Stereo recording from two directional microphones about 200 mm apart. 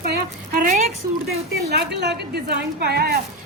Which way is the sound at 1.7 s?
55° right (ahead or behind).